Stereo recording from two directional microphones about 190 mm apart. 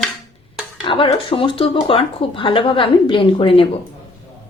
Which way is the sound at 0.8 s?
25° left (ahead or behind).